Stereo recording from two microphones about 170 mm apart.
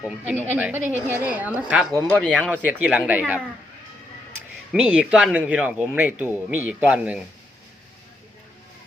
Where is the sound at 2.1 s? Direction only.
5° left (ahead or behind).